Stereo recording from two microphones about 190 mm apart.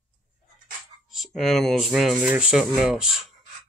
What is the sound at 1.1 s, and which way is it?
Speech, centre (ahead or behind).